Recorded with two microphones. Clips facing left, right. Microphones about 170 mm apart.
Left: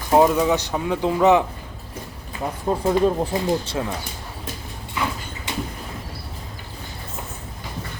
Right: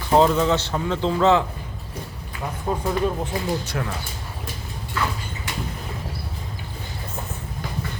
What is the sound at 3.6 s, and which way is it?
Speech, 30° left (ahead or behind).